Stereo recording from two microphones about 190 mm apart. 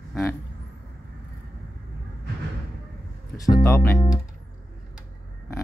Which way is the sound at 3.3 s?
20° left (ahead or behind).